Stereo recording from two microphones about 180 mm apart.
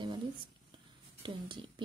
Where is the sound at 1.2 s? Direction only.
25° right (ahead or behind).